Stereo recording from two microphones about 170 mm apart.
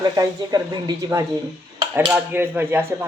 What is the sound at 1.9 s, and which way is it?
Speech, 10° right (ahead or behind).